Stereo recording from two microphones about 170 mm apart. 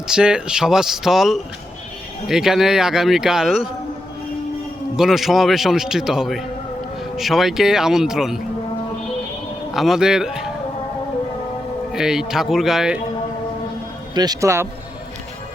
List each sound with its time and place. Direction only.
0.1 s speech: 5° right (ahead or behind)
4.9 s speech: centre (ahead or behind)
9.7 s speech: centre (ahead or behind)
11.9 s speech: 5° right (ahead or behind)
14.2 s speech: 20° right (ahead or behind)